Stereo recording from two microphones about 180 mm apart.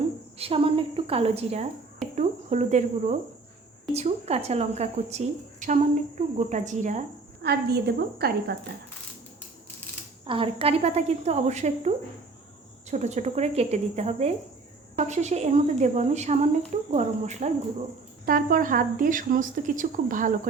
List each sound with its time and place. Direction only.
0.3 s a woman's voice: 30° right (ahead or behind)
7.4 s a woman's voice: 65° right (ahead or behind)
10.2 s a woman's voice: 30° right (ahead or behind); by 20.5 s 50° right (ahead or behind)